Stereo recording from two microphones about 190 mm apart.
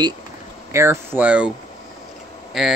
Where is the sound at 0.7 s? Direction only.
10° right (ahead or behind).